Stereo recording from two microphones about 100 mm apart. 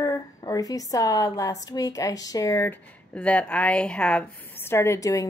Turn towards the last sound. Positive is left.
turn(degrees=35)  # may be behind; listen again after turning